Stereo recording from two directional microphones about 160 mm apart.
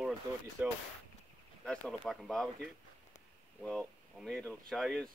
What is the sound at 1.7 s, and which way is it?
Speech, centre (ahead or behind).